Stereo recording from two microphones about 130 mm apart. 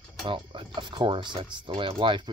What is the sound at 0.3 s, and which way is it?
Speech, 40° right (ahead or behind).